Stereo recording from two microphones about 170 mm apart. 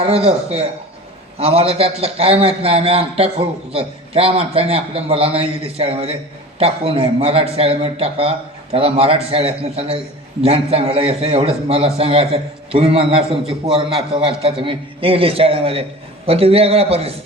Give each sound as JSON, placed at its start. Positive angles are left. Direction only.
{"t": 0.0, "sound": "a man's voice", "side_deg": -35}